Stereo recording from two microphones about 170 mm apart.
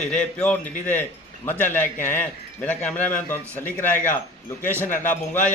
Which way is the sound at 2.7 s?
5° left (ahead or behind).